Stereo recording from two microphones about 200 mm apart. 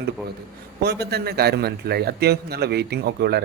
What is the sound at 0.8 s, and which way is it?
A man's voice, 55° right (ahead or behind).